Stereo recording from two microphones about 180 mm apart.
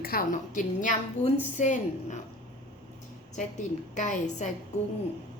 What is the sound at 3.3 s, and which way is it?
A woman's voice, 45° left (ahead or behind).